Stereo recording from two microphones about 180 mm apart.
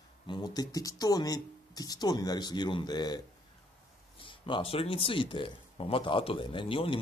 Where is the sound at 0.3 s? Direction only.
20° left (ahead or behind).